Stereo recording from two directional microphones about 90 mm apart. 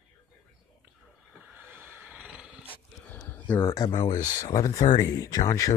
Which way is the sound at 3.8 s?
50° left (ahead or behind).